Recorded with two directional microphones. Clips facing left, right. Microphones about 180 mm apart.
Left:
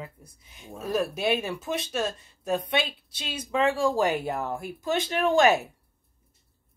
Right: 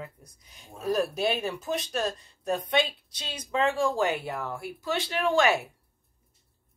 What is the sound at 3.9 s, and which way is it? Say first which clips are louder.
Speech: left 3 dB; 40° left (ahead or behind).